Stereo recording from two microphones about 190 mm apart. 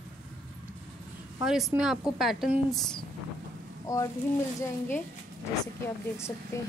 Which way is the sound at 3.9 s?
20° left (ahead or behind).